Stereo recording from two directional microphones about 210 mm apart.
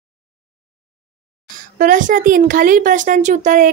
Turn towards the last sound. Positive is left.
turn(degrees=-35)  # may be behind; listen again after turning